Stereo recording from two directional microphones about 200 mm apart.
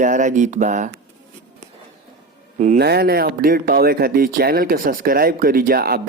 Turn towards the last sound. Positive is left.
turn(degrees=-50)  # may be behind; listen again after turning